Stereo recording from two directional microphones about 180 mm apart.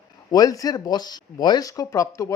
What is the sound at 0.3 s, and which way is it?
Speech, 20° left (ahead or behind).